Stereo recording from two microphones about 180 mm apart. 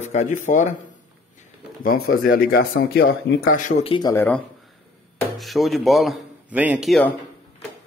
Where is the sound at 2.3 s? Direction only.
60° left (ahead or behind).